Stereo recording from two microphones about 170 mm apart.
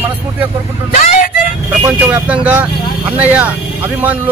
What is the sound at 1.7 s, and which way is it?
Speech, 10° right (ahead or behind).